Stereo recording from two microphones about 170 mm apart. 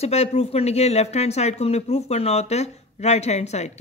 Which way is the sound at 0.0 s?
40° left (ahead or behind).